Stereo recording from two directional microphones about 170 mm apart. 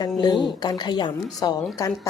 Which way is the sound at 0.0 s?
25° left (ahead or behind).